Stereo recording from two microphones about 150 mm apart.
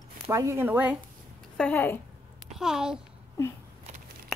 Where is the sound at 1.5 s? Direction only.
10° left (ahead or behind).